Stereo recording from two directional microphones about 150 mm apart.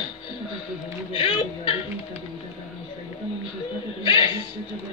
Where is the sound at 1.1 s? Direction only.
35° left (ahead or behind).